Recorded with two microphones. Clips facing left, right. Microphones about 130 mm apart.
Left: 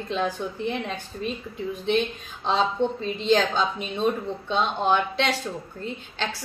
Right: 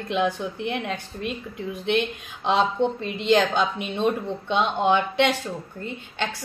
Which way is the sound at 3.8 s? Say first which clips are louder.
Right 1 dB; 65° right (ahead or behind).